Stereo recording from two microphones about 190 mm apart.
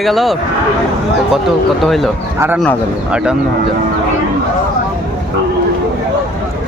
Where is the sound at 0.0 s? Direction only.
Centre (ahead or behind).